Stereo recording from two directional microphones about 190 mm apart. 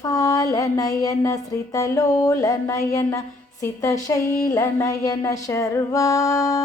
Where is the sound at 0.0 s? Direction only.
15° left (ahead or behind).